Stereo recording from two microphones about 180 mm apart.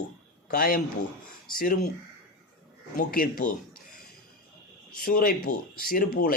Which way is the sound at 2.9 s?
50° left (ahead or behind).